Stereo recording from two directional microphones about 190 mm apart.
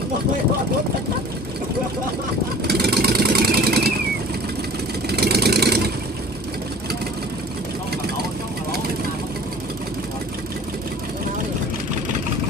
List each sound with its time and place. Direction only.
2.6 s vehicle: 55° right (ahead or behind)
5.1 s vehicle: 60° right (ahead or behind)